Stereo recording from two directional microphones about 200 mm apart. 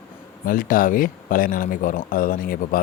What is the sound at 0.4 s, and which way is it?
Speech, 45° left (ahead or behind).